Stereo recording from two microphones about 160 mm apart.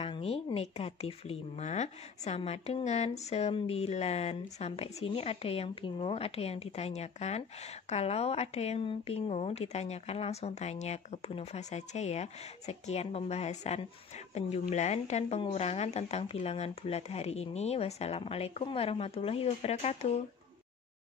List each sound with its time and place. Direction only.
0.0 s speech: 35° left (ahead or behind)